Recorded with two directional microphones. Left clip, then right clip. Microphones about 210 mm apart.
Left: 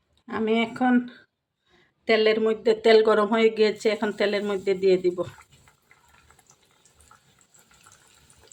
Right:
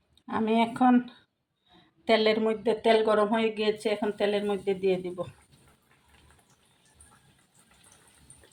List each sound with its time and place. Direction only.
0.3 s speech: 15° left (ahead or behind)
2.0 s speech: 15° left (ahead or behind); by 5.3 s 35° left (ahead or behind)